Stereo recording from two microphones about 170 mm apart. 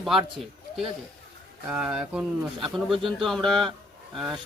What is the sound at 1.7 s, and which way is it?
Speech, 5° right (ahead or behind).